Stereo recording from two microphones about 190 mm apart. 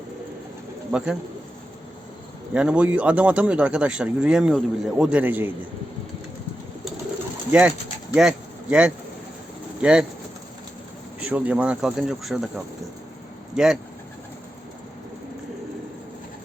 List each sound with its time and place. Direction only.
0.9 s speech: 5° right (ahead or behind)
2.5 s speech: 5° right (ahead or behind)
8.1 s speech: 5° right (ahead or behind)
11.2 s speech: 5° right (ahead or behind)